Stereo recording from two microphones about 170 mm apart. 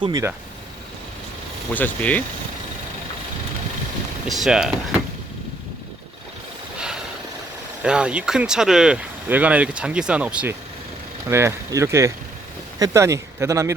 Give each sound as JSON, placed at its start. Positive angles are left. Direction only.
{"t": 0.0, "sound": "speech", "side_deg": -25}
{"t": 1.7, "sound": "speech", "side_deg": 10}
{"t": 4.3, "sound": "speech", "side_deg": 0}
{"t": 6.7, "sound": "vehicle", "side_deg": -5}
{"t": 7.8, "sound": "speech", "side_deg": -5}